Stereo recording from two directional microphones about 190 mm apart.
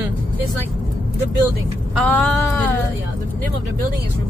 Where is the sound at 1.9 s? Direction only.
5° left (ahead or behind).